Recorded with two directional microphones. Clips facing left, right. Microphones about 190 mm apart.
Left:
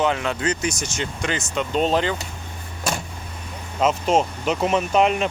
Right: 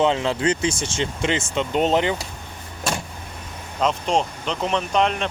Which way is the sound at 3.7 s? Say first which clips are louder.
Left 2 dB; 5° left (ahead or behind).